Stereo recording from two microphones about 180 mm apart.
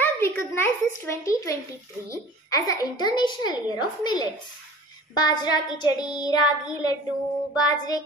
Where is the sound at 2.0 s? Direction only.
20° left (ahead or behind).